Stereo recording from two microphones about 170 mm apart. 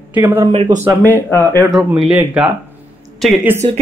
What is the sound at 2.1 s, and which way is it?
A woman's voice, 10° right (ahead or behind).